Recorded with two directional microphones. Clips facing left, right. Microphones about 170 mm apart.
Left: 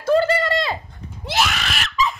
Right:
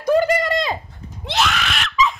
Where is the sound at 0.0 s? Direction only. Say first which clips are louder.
Right 1 dB; 15° right (ahead or behind).